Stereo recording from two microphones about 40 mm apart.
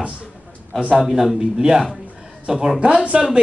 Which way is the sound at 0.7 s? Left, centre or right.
Right.